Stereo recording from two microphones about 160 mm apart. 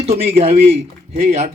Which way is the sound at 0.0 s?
40° right (ahead or behind).